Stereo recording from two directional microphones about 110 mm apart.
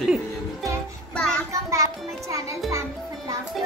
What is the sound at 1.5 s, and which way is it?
A child's voice, 30° right (ahead or behind).